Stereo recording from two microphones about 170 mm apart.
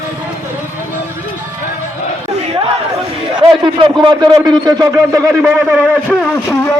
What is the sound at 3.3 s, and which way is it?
A man's voice, 30° right (ahead or behind).